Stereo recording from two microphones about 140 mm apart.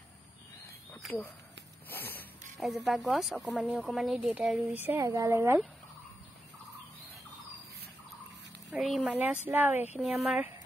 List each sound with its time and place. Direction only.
1.9 s a sound: 15° left (ahead or behind)
2.6 s a woman's voice: centre (ahead or behind); by 5.6 s 20° right (ahead or behind)
8.6 s speech: centre (ahead or behind)
9.1 s a woman's voice: 10° right (ahead or behind)